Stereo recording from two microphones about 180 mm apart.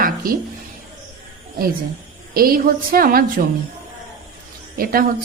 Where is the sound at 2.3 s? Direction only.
55° right (ahead or behind).